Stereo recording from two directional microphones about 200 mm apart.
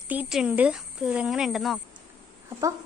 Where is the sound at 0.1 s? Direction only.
5° right (ahead or behind).